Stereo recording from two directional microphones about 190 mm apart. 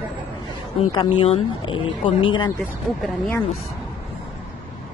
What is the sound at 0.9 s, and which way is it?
Speech, 25° left (ahead or behind).